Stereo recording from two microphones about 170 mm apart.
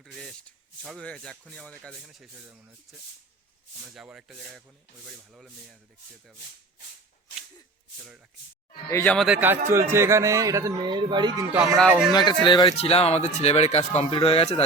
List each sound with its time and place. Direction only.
0.0 s shuffle: centre (ahead or behind)
0.8 s speech: 5° left (ahead or behind)
3.9 s speech: 5° right (ahead or behind)
8.9 s speech: 15° left (ahead or behind)
9.1 s a man's voice: 5° right (ahead or behind); by 11.6 s 25° right (ahead or behind)
11.9 s speech: 5° right (ahead or behind)
12.1 s speech: 25° left (ahead or behind)